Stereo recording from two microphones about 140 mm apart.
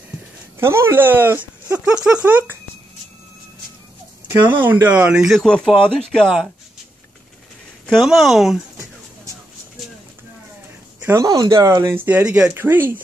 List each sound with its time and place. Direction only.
0.6 s speech: 15° right (ahead or behind)
4.3 s speech: 15° right (ahead or behind)
7.8 s speech: centre (ahead or behind)
11.0 s speech: 20° right (ahead or behind)